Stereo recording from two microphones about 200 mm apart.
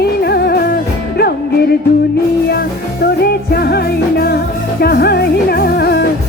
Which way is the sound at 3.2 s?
50° left (ahead or behind).